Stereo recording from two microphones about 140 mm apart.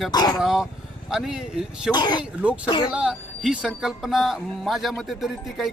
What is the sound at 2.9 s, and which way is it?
Speech, 5° right (ahead or behind).